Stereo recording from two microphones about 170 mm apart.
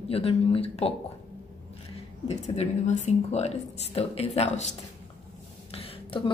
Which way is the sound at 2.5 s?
40° left (ahead or behind).